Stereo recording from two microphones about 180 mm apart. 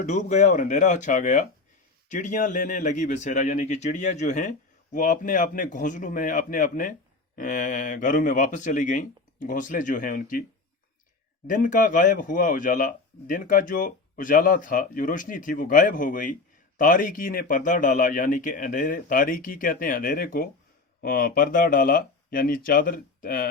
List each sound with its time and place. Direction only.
0.0 s a man's voice: 45° left (ahead or behind)
11.4 s a man's voice: 50° left (ahead or behind)